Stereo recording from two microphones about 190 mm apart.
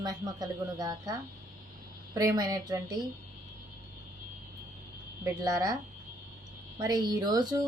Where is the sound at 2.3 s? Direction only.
20° right (ahead or behind).